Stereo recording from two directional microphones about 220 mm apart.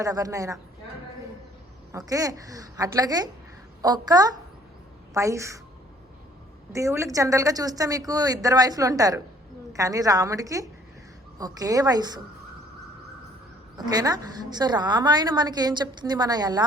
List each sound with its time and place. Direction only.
0.0 s a woman's voice: 15° right (ahead or behind)
1.9 s a woman's voice: 15° right (ahead or behind)
6.7 s a woman's voice: 15° right (ahead or behind)
13.7 s a woman's voice: 20° right (ahead or behind)